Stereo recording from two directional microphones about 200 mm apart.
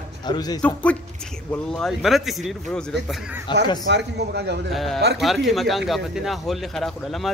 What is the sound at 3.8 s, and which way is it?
Speech, 60° right (ahead or behind).